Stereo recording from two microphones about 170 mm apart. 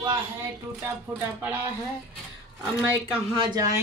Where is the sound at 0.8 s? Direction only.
10° right (ahead or behind).